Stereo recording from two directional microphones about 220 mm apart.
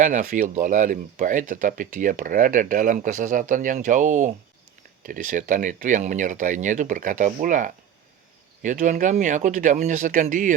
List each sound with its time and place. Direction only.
0.0 s speech: 35° right (ahead or behind)